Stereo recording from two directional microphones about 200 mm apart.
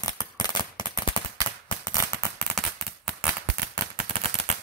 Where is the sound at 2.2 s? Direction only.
5° left (ahead or behind).